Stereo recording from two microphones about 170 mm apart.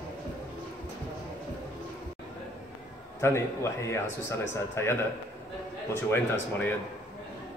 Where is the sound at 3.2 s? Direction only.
15° left (ahead or behind).